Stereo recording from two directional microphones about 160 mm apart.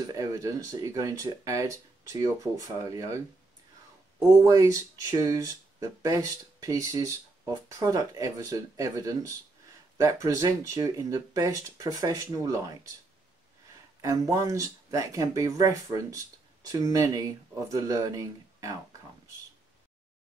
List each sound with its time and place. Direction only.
0.1 s speech: 20° right (ahead or behind)
4.5 s speech: 20° right (ahead or behind)
14.0 s speech: 20° right (ahead or behind)